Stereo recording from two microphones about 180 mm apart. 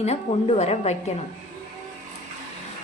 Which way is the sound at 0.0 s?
35° left (ahead or behind).